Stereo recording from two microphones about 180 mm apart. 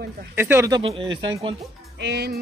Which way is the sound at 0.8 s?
30° right (ahead or behind).